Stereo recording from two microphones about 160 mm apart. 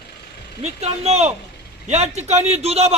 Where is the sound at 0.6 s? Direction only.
40° right (ahead or behind).